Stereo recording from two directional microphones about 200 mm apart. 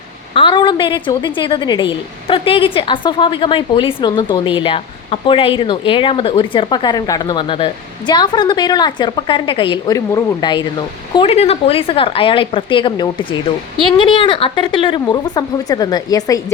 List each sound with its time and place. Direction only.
0.3 s a woman's voice: 25° left (ahead or behind)